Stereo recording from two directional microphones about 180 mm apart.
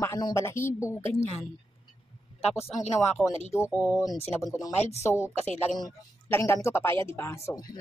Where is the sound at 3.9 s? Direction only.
15° left (ahead or behind).